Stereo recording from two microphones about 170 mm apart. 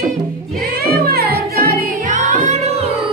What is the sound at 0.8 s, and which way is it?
Music, 65° right (ahead or behind).